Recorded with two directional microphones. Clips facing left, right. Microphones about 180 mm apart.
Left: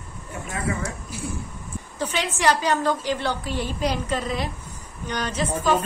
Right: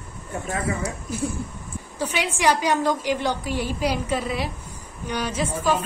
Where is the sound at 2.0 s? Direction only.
10° right (ahead or behind).